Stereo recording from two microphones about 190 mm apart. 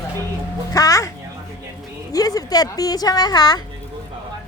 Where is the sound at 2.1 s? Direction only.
20° left (ahead or behind).